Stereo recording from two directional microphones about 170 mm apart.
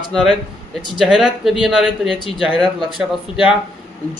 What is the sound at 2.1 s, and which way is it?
Speech, 30° right (ahead or behind).